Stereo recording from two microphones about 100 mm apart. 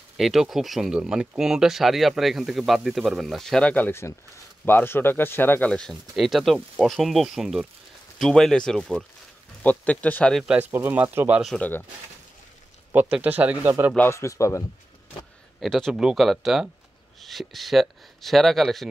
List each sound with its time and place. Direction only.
0.2 s speech: 5° right (ahead or behind); by 5.7 s 20° left (ahead or behind)
5.7 s speech: 10° left (ahead or behind)
6.1 s speech: centre (ahead or behind); by 10.3 s 15° left (ahead or behind)
10.3 s speech: 5° right (ahead or behind)
10.6 s speech: 20° right (ahead or behind)
13.1 s speech: 15° right (ahead or behind)
13.9 s speech: 25° left (ahead or behind)
15.6 s speech: 5° left (ahead or behind)